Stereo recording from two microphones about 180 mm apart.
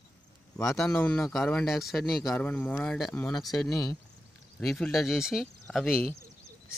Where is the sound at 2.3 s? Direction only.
10° left (ahead or behind).